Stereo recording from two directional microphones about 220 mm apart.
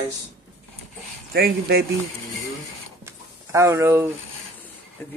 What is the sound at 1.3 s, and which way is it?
Speech, 45° right (ahead or behind).